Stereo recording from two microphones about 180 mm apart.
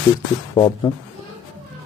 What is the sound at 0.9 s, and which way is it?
Speech, 30° left (ahead or behind).